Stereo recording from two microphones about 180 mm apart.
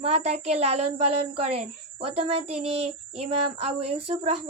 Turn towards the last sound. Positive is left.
turn(degrees=-35)  # may be behind; listen again after turning